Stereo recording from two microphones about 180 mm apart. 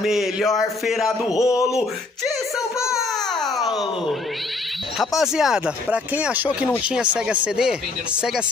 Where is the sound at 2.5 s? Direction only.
5° right (ahead or behind).